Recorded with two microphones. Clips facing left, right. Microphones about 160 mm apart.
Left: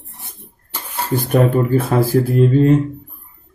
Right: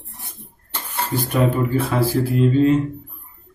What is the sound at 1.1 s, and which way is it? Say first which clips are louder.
Speech: left 5 dB; 50° left (ahead or behind).